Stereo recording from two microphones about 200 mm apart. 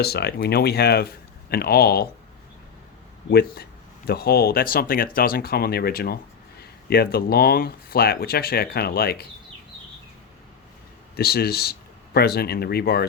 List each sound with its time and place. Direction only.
0.0 s speech: 55° left (ahead or behind)
3.2 s speech: 50° left (ahead or behind)
11.2 s speech: 50° left (ahead or behind)